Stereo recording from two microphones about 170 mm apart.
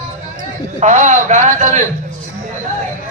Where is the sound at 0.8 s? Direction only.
45° right (ahead or behind).